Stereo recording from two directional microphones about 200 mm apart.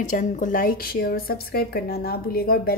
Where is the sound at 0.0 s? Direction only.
40° left (ahead or behind).